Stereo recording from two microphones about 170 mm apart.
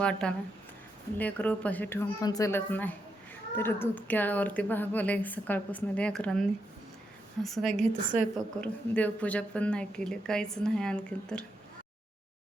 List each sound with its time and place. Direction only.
0.0 s speech: 5° left (ahead or behind)
7.4 s speech: centre (ahead or behind)